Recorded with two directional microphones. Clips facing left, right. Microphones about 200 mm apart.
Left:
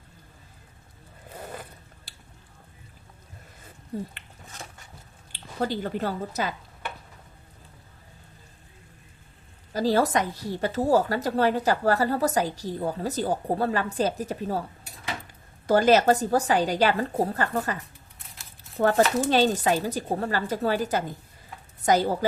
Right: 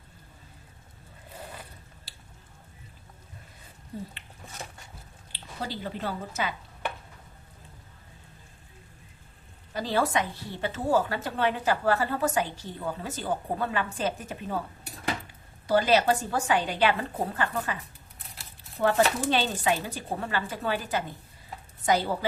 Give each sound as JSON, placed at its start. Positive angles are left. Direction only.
{"t": 5.3, "sound": "a woman's voice", "side_deg": 50}
{"t": 9.7, "sound": "a woman's voice", "side_deg": 40}
{"t": 15.6, "sound": "a woman's voice", "side_deg": 45}
{"t": 18.8, "sound": "a woman's voice", "side_deg": 40}